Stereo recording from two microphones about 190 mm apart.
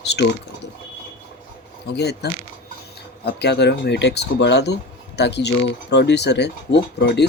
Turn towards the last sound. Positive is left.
turn(degrees=60)  # may be behind; listen again after turning